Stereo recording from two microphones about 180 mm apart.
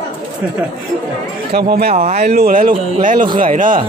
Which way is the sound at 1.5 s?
60° right (ahead or behind).